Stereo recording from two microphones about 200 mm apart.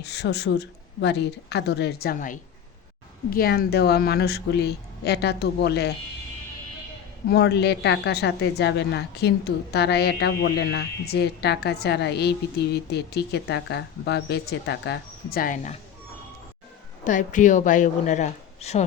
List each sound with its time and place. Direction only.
0.0 s a woman's voice: 55° left (ahead or behind)
7.3 s a woman's voice: 55° left (ahead or behind); by 15.8 s 40° left (ahead or behind)
17.0 s speech: 40° left (ahead or behind)